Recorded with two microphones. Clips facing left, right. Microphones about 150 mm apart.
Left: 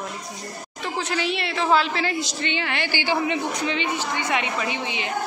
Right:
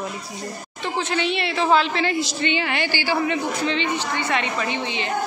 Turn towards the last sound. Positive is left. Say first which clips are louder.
# right 2 dB
turn(degrees=10)  # may be behind; listen again after turning